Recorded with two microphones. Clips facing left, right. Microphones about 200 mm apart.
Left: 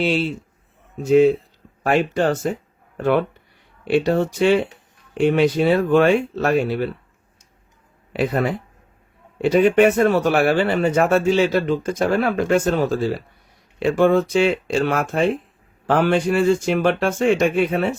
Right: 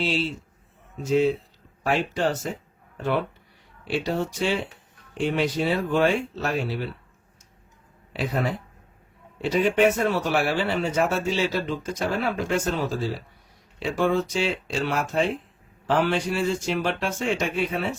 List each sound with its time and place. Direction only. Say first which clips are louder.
0.0 s speech: left 6 dB; 60° left (ahead or behind)
8.1 s speech: left 6 dB; 60° left (ahead or behind)